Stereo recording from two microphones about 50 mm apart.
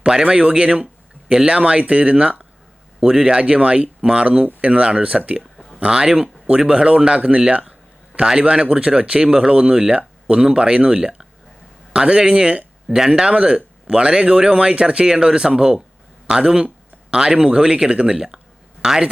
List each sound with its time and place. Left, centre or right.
0.0 s speech: centre